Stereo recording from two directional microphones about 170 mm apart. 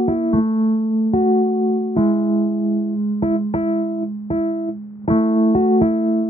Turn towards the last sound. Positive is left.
turn(degrees=35)  # may be behind; listen again after turning